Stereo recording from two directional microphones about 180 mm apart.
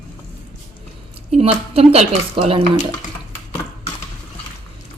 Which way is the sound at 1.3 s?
35° right (ahead or behind).